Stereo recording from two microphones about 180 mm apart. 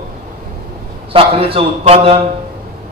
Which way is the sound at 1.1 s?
30° right (ahead or behind).